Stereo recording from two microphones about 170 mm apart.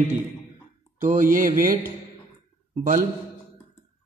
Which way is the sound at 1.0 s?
50° right (ahead or behind).